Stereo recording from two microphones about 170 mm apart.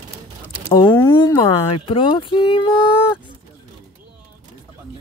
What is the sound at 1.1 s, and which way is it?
Speech, 25° left (ahead or behind).